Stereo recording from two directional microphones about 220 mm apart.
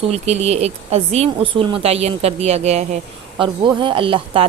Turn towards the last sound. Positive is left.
turn(degrees=-25)  # may be behind; listen again after turning